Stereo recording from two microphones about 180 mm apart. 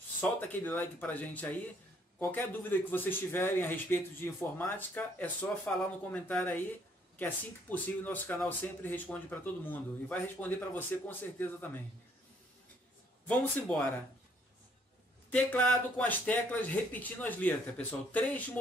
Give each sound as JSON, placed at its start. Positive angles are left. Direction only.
{"t": 0.2, "sound": "speech", "side_deg": 10}
{"t": 13.3, "sound": "speech", "side_deg": 5}
{"t": 15.3, "sound": "speech", "side_deg": 10}